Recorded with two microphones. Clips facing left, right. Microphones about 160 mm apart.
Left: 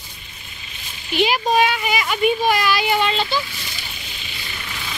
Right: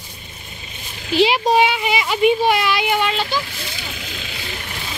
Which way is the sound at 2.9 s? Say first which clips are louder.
Even; 10° right (ahead or behind).